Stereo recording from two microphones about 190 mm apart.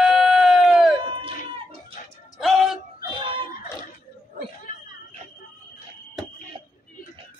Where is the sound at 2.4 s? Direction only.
Centre (ahead or behind).